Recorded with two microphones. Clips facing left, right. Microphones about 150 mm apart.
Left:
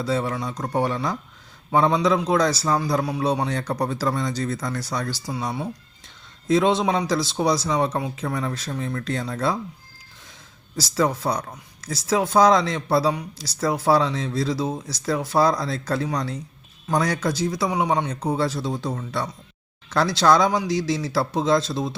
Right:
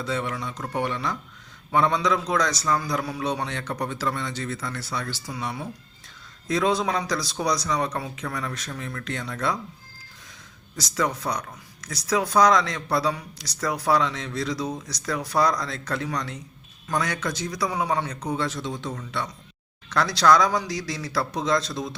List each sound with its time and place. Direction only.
0.0 s a man's voice: 35° left (ahead or behind)
10.8 s a man's voice: 30° left (ahead or behind)
18.2 s a man's voice: 30° left (ahead or behind)